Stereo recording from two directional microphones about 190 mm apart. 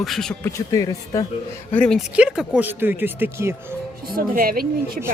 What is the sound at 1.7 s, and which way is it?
Speech, 5° left (ahead or behind).